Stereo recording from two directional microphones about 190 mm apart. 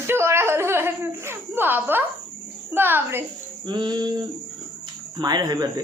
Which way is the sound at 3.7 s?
20° right (ahead or behind).